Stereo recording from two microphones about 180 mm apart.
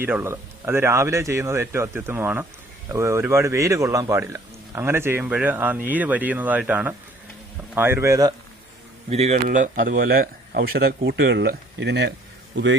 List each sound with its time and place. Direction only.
0.0 s speech: 10° right (ahead or behind)
9.0 s speech: 35° right (ahead or behind); by 12.1 s 70° right (ahead or behind)